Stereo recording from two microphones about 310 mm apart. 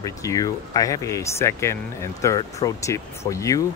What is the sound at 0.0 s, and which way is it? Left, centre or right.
Speech, centre.